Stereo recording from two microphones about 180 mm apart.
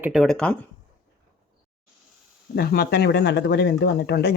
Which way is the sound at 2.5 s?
60° left (ahead or behind).